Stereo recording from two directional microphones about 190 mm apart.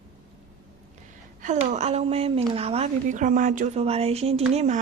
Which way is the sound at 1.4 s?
40° right (ahead or behind).